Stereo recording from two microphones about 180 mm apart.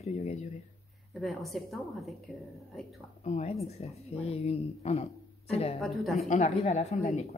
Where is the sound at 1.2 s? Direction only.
Centre (ahead or behind).